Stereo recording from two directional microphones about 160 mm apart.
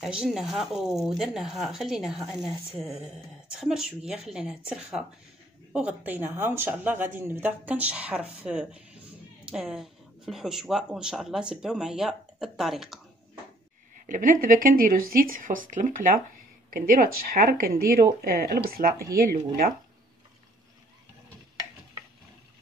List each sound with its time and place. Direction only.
0.2 s speech: centre (ahead or behind)
14.0 s speech: 55° right (ahead or behind)